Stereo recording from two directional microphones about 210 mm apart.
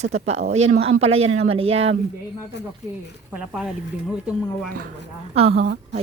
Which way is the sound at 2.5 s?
55° left (ahead or behind).